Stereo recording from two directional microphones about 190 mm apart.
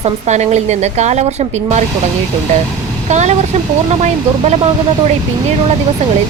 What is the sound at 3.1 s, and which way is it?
Speech, 40° right (ahead or behind).